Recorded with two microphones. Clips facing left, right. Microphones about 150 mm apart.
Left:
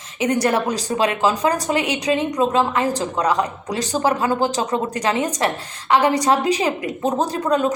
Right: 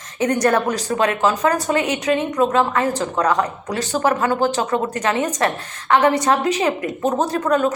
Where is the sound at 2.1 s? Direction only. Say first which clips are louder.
Right 1 dB; 25° left (ahead or behind).